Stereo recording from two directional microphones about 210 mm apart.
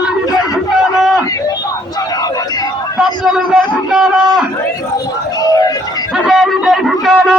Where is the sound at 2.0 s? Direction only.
20° left (ahead or behind).